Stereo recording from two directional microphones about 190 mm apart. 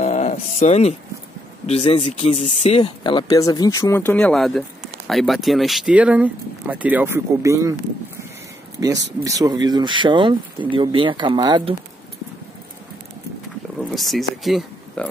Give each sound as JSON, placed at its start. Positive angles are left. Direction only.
{"t": 0.0, "sound": "a sound", "side_deg": 35}
{"t": 1.7, "sound": "speech", "side_deg": 35}
{"t": 2.8, "sound": "speech", "side_deg": 25}
{"t": 8.7, "sound": "speech", "side_deg": -20}
{"t": 13.9, "sound": "speech", "side_deg": 0}